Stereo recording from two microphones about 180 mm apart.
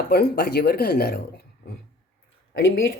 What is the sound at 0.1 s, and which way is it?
Speech, 60° left (ahead or behind).